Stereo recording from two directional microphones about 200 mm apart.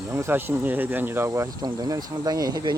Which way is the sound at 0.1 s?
15° right (ahead or behind).